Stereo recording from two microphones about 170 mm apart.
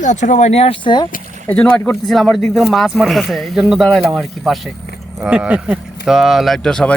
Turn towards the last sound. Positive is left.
turn(degrees=5)  # may be behind; listen again after turning